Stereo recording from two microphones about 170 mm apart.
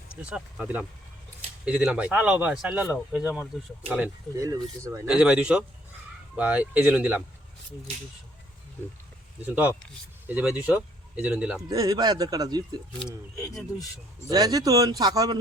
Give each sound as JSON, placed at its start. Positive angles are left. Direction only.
{"t": 0.2, "sound": "speech", "side_deg": -5}
{"t": 3.3, "sound": "speech", "side_deg": 5}
{"t": 4.4, "sound": "speech", "side_deg": -20}
{"t": 5.0, "sound": "speech", "side_deg": -5}
{"t": 9.4, "sound": "speech", "side_deg": -10}
{"t": 11.7, "sound": "a man's voice", "side_deg": -20}
{"t": 13.5, "sound": "speech", "side_deg": 0}
{"t": 14.3, "sound": "a man's voice", "side_deg": -20}